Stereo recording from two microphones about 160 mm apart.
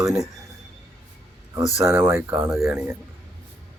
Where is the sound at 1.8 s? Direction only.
15° right (ahead or behind).